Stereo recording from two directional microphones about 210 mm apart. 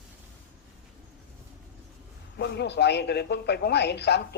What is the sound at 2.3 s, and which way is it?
Speech, 50° left (ahead or behind).